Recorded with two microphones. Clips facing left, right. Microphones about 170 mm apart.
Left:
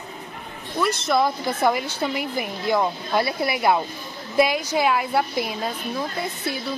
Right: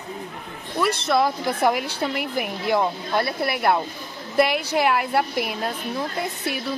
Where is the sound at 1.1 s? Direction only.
10° right (ahead or behind).